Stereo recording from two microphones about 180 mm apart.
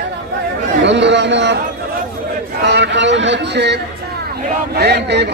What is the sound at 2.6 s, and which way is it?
A man's voice, 75° right (ahead or behind).